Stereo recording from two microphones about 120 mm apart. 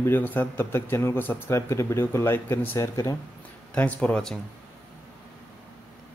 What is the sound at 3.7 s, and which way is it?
Speech, 10° left (ahead or behind).